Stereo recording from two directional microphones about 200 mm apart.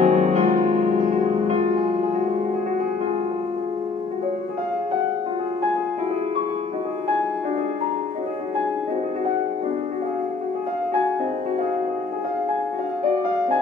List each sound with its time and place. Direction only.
0.0 s music: 35° right (ahead or behind)